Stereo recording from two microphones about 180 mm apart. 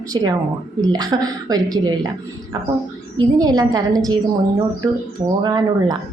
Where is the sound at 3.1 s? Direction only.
20° right (ahead or behind).